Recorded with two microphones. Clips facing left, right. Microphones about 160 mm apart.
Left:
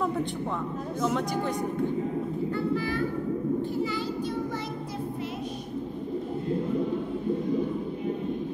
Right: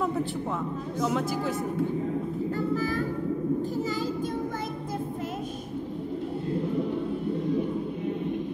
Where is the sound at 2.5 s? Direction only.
40° right (ahead or behind).